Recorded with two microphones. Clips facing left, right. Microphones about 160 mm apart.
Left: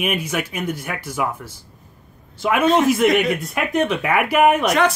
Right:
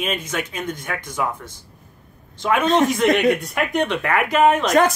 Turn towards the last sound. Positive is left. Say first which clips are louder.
# left 1 dB
turn(degrees=10)  # may be behind; listen again after turning